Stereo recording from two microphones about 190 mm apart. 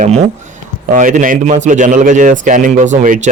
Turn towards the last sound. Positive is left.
turn(degrees=-40)  # may be behind; listen again after turning